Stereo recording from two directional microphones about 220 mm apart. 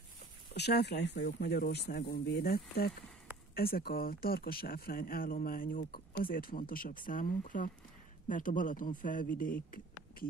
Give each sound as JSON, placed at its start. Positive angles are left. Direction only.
{"t": 0.6, "sound": "speech", "side_deg": 50}